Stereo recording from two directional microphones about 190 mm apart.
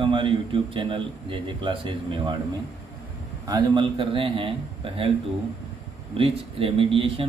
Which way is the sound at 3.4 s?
25° right (ahead or behind).